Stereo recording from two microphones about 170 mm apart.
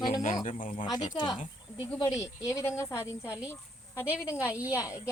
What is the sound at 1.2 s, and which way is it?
Speech, 25° left (ahead or behind).